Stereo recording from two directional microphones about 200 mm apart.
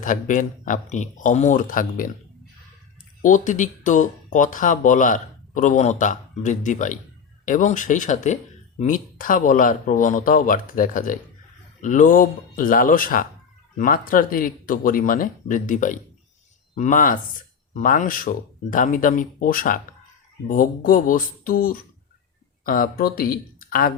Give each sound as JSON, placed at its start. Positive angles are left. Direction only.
{"t": 0.0, "sound": "speech", "side_deg": 40}
{"t": 3.2, "sound": "speech", "side_deg": 40}